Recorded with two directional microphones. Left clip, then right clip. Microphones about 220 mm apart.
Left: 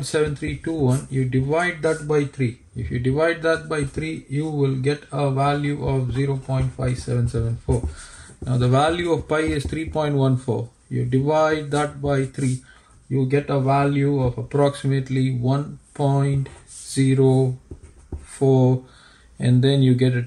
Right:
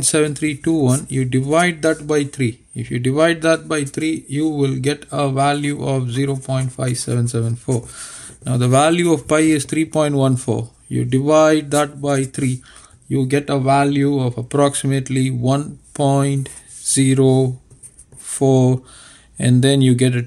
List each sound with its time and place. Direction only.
0.0 s speech: 40° right (ahead or behind)